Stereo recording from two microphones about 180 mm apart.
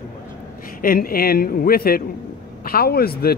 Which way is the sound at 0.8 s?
55° left (ahead or behind).